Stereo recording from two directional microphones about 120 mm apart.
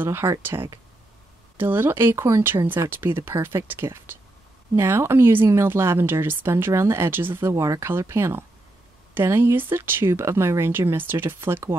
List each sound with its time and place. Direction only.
0.0 s speech: 20° right (ahead or behind)